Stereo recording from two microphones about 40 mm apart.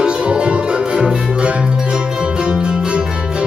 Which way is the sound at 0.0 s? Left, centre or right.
Right.